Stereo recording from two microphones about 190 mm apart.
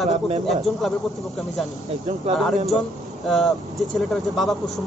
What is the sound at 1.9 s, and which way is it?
Speech, 35° right (ahead or behind).